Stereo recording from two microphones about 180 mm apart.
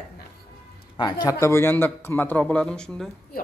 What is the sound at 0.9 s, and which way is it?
Speech, 25° left (ahead or behind).